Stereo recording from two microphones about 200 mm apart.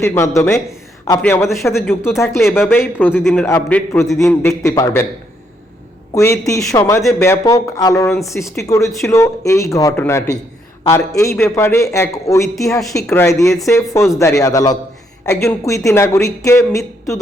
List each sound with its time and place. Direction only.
0.0 s a man's voice: 15° left (ahead or behind)
6.1 s a man's voice: 15° left (ahead or behind)